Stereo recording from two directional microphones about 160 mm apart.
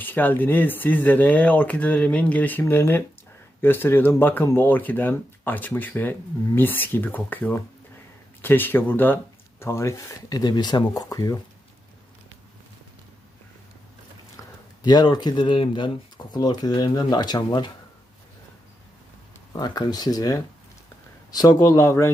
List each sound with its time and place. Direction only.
0.0 s speech: 10° left (ahead or behind)
14.8 s speech: 25° left (ahead or behind)
19.5 s speech: 25° left (ahead or behind)